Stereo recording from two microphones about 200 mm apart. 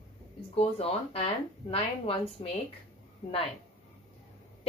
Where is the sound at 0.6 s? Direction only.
30° left (ahead or behind).